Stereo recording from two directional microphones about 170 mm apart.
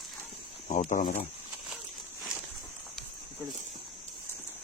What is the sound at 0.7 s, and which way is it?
Speech, 50° left (ahead or behind).